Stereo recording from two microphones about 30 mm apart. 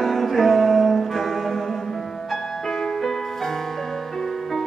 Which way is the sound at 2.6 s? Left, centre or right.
Centre.